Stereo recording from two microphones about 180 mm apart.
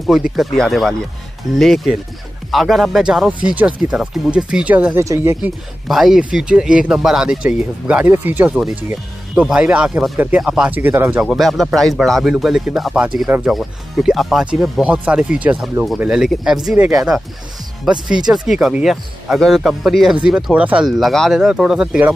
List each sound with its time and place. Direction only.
0.0 s speech: centre (ahead or behind)
5.9 s speech: centre (ahead or behind)